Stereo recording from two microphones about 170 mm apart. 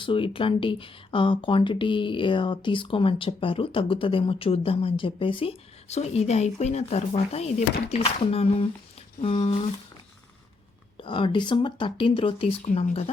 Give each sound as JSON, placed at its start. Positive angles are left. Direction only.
{"t": 0.0, "sound": "speech", "side_deg": 30}
{"t": 10.9, "sound": "speech", "side_deg": 30}